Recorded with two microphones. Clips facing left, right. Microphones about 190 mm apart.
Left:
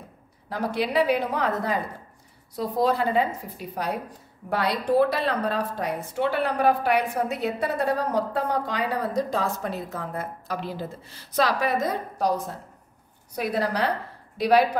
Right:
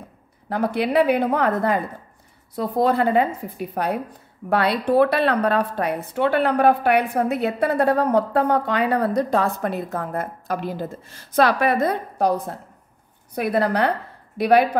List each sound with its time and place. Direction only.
0.5 s a woman's voice: 60° right (ahead or behind)